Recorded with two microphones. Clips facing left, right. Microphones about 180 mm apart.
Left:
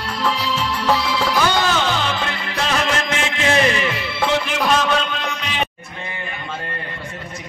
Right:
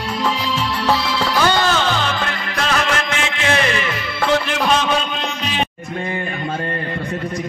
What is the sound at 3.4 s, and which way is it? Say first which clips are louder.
Music: left 2 dB; 30° left (ahead or behind).